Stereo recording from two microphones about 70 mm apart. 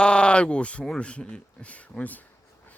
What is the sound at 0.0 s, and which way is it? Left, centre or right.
A man's voice, centre.